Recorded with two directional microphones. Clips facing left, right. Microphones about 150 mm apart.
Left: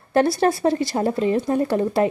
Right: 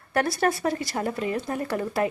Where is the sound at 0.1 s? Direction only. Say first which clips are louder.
Left 6 dB; 25° left (ahead or behind).